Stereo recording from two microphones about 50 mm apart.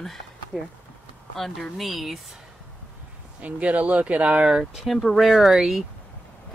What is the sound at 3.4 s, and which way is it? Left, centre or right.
Speech, right.